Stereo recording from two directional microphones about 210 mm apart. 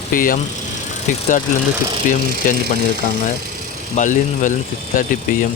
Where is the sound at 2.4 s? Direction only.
40° left (ahead or behind).